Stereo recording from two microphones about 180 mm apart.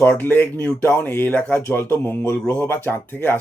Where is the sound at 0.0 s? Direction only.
10° left (ahead or behind).